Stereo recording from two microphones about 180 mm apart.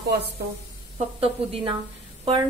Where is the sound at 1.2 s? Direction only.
30° right (ahead or behind).